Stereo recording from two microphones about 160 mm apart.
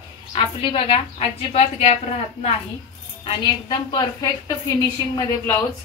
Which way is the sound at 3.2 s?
30° left (ahead or behind).